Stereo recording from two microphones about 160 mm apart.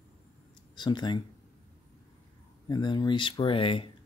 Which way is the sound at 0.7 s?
30° left (ahead or behind).